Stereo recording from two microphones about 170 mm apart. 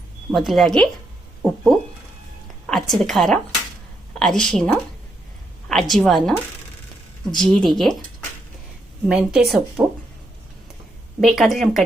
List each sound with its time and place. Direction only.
0.3 s a woman's voice: centre (ahead or behind)
7.4 s speech: 25° right (ahead or behind)
7.7 s a woman's voice: centre (ahead or behind)
9.0 s a woman's voice: 5° right (ahead or behind)
11.2 s a woman's voice: centre (ahead or behind)